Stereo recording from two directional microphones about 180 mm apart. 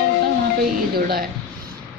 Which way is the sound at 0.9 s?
55° right (ahead or behind).